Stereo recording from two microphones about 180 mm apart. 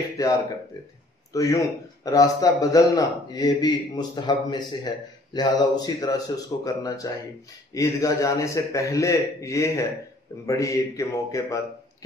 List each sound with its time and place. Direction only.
0.2 s a man's voice: 20° left (ahead or behind)